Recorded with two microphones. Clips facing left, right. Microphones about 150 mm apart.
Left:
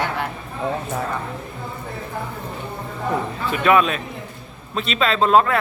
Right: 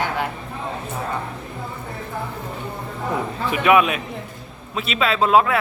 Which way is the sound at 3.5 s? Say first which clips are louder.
Even; 15° right (ahead or behind).